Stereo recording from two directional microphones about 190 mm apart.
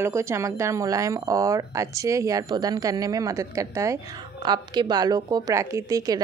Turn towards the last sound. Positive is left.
turn(degrees=-20)  # may be behind; listen again after turning